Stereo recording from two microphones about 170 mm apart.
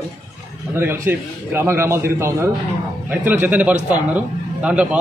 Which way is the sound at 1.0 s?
15° right (ahead or behind).